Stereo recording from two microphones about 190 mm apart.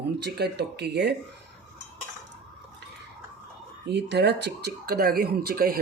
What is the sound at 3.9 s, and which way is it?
Speech, 65° right (ahead or behind).